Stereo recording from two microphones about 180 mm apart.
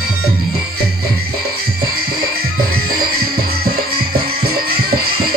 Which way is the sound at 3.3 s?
55° right (ahead or behind).